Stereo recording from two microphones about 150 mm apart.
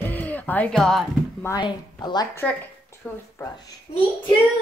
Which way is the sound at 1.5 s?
30° left (ahead or behind).